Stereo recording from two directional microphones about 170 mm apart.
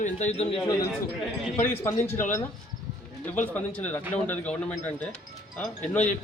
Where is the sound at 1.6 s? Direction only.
15° left (ahead or behind).